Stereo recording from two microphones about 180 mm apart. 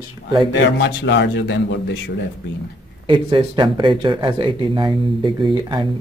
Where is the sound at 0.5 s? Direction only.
70° left (ahead or behind).